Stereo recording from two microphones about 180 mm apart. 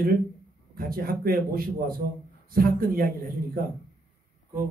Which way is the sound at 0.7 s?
55° right (ahead or behind).